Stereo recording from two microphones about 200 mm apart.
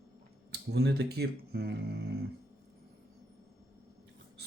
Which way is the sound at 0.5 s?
55° right (ahead or behind).